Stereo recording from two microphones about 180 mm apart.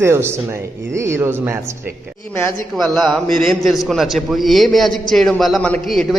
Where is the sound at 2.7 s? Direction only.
Centre (ahead or behind).